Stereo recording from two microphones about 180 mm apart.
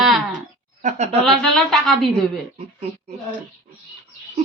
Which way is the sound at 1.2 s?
Centre (ahead or behind).